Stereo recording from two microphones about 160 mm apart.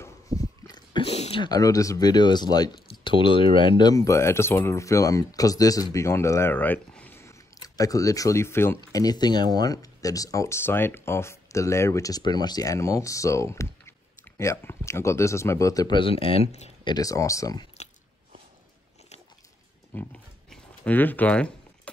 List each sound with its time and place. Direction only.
0.4 s speech: 25° left (ahead or behind)
16.9 s speech: 20° left (ahead or behind)
19.9 s a sound: 10° left (ahead or behind)